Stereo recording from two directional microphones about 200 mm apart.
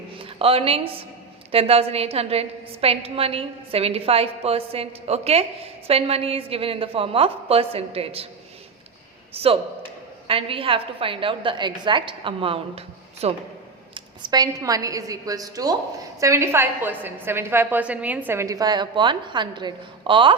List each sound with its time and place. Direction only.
0.2 s a woman's voice: 30° right (ahead or behind)
9.3 s a man's voice: 30° right (ahead or behind)